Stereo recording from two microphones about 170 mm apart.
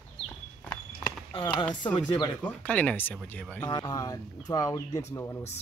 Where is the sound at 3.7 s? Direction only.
25° left (ahead or behind).